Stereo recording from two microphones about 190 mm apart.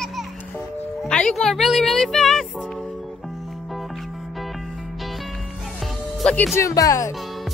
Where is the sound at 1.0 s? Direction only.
5° left (ahead or behind).